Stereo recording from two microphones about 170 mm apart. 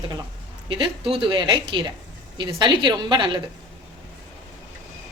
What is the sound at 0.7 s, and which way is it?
A woman's voice, 30° right (ahead or behind).